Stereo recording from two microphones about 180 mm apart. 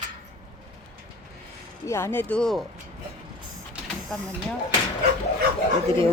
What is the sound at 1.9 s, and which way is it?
Speech, 15° left (ahead or behind).